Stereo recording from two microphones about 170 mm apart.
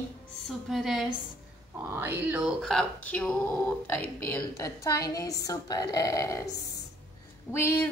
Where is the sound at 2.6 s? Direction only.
5° left (ahead or behind); by 6.5 s 20° left (ahead or behind).